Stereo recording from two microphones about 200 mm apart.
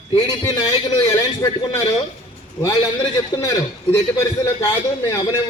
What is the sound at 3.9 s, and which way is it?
Speech, 15° left (ahead or behind).